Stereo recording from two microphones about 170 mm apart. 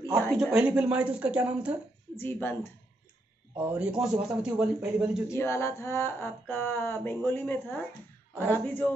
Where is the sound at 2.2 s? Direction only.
15° left (ahead or behind).